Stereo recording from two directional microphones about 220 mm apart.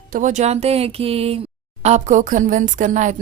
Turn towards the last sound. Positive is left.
turn(degrees=-35)  # may be behind; listen again after turning